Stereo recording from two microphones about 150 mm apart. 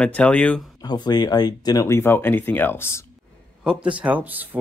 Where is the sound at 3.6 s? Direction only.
5° right (ahead or behind).